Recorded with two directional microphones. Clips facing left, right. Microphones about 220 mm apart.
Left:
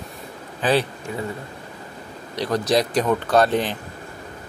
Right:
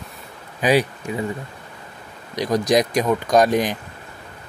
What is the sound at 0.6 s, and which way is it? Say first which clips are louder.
Speech: right 2 dB; 15° right (ahead or behind).